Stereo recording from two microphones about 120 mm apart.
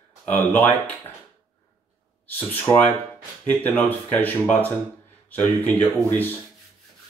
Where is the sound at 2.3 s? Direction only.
15° left (ahead or behind).